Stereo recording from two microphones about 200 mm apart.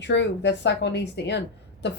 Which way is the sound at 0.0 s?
60° left (ahead or behind).